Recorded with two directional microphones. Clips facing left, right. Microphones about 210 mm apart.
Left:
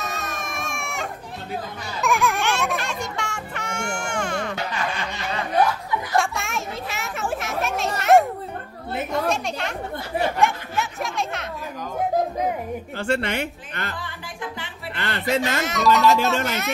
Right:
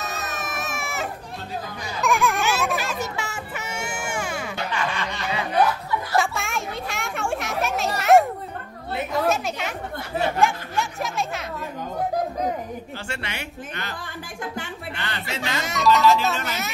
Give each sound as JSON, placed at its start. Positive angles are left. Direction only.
{"t": 0.0, "sound": "baby cry", "side_deg": 0}
{"t": 2.0, "sound": "music", "side_deg": 0}
{"t": 6.1, "sound": "a sound", "side_deg": 0}
{"t": 9.1, "sound": "speech", "side_deg": -5}
{"t": 12.9, "sound": "speech", "side_deg": 55}
{"t": 15.0, "sound": "speech", "side_deg": 55}
{"t": 15.6, "sound": "speech", "side_deg": 0}